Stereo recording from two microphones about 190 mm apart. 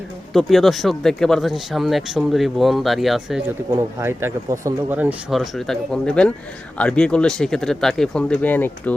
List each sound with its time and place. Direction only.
0.3 s speech: centre (ahead or behind)
3.7 s speech: 15° right (ahead or behind); by 8.7 s 10° left (ahead or behind)